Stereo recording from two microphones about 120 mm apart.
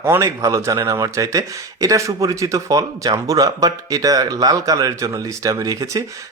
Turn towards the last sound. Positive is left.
turn(degrees=-30)  # may be behind; listen again after turning